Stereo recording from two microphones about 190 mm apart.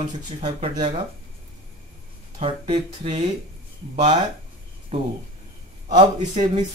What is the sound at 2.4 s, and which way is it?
Speech, 30° right (ahead or behind).